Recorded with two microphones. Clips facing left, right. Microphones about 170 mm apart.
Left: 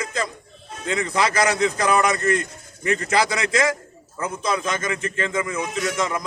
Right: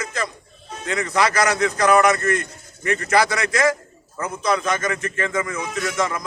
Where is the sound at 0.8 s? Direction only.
25° left (ahead or behind).